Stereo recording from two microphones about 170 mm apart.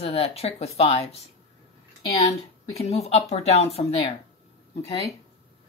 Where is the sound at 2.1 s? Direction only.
40° left (ahead or behind).